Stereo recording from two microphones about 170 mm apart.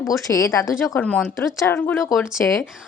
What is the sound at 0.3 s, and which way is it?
A woman's voice, 20° left (ahead or behind).